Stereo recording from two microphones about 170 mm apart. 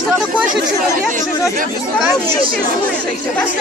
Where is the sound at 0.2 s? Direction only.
Centre (ahead or behind).